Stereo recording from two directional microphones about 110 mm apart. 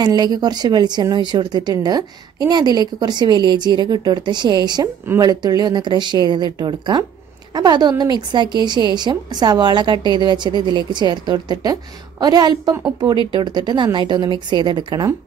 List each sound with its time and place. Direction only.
0.0 s a woman's voice: 40° right (ahead or behind)